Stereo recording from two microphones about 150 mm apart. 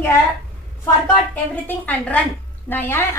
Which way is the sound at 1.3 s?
10° left (ahead or behind).